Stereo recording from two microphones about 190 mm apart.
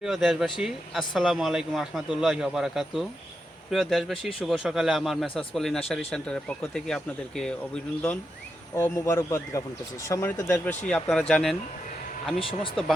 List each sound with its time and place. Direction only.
0.0 s speech: centre (ahead or behind)
8.7 s speech: 15° left (ahead or behind)
12.4 s speech: 30° left (ahead or behind)